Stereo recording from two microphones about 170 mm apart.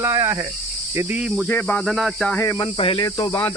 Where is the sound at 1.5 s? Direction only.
10° left (ahead or behind).